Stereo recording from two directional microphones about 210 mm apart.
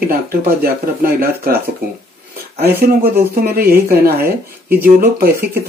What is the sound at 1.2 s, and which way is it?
Speech, 45° right (ahead or behind).